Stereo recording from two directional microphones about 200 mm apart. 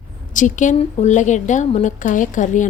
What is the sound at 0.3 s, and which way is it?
A woman's voice, 40° left (ahead or behind).